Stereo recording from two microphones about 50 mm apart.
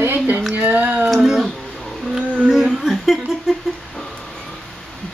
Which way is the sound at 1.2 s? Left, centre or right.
Centre.